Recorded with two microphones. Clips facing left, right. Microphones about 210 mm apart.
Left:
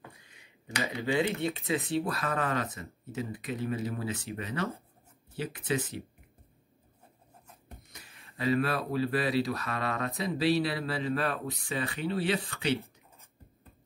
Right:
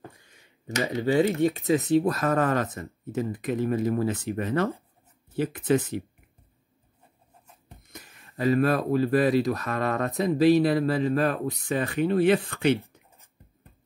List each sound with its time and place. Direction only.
0.4 s a sound: 45° right (ahead or behind)
0.9 s speech: 40° right (ahead or behind)
7.9 s speech: 50° right (ahead or behind)